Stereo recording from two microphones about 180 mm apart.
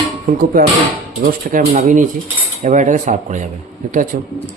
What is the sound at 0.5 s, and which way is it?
Speech, 55° right (ahead or behind).